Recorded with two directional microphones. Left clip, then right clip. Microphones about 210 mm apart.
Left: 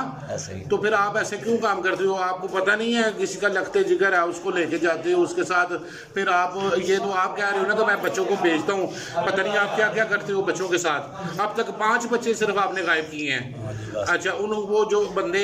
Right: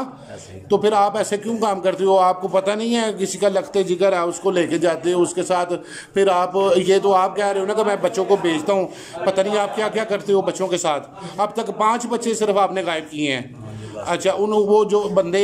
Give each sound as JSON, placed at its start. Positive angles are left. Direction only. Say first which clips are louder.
{"t": 0.7, "sound": "a man's voice", "louder": "right 5 dB", "side_deg": -25}
{"t": 9.2, "sound": "a man's voice", "louder": "right 3 dB", "side_deg": -25}